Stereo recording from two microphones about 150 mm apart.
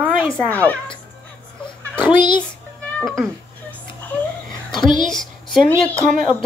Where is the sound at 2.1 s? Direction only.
30° left (ahead or behind).